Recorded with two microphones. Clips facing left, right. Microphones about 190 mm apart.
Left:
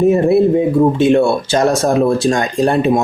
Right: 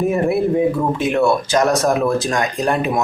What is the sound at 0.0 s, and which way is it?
Speech, 25° left (ahead or behind).